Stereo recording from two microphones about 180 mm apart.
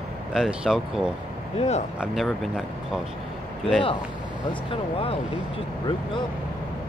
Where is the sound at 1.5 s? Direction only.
35° left (ahead or behind).